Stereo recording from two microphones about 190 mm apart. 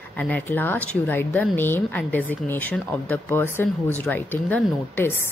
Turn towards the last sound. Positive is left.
turn(degrees=10)  # may be behind; listen again after turning